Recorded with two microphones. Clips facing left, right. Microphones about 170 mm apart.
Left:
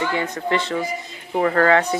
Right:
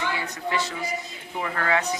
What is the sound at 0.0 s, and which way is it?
A woman's voice, 50° left (ahead or behind).